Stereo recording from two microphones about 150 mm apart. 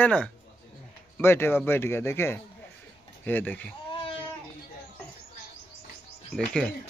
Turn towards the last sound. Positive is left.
turn(degrees=5)  # may be behind; listen again after turning